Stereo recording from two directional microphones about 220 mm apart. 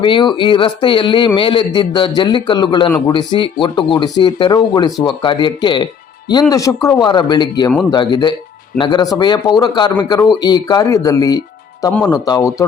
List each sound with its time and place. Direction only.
0.0 s speech: 20° left (ahead or behind)